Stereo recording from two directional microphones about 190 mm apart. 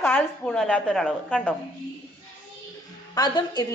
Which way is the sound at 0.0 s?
5° left (ahead or behind).